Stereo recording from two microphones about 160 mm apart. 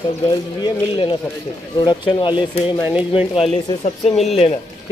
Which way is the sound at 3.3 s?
35° left (ahead or behind).